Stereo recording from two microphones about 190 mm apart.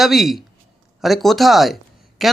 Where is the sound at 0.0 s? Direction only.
Centre (ahead or behind).